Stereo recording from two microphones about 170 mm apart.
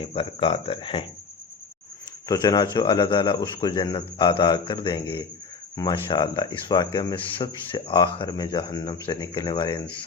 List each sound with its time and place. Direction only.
0.0 s speech: 30° left (ahead or behind)
2.2 s speech: 20° left (ahead or behind)